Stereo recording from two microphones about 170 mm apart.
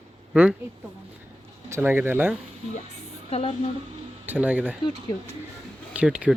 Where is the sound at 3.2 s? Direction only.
40° left (ahead or behind).